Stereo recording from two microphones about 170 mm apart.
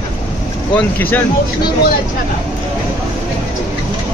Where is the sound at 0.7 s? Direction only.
10° left (ahead or behind).